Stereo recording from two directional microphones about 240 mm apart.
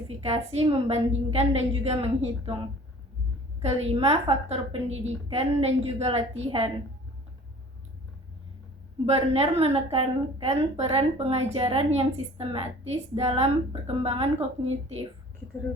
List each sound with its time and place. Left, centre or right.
0.2 s a woman's voice: right
3.6 s a woman's voice: right
9.0 s a woman's voice: right